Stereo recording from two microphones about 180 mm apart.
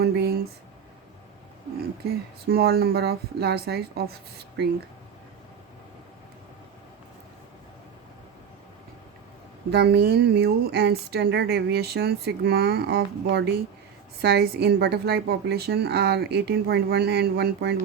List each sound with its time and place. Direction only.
0.0 s a sound: 60° right (ahead or behind)
2.5 s speech: 60° right (ahead or behind)
9.6 s speech: 65° right (ahead or behind)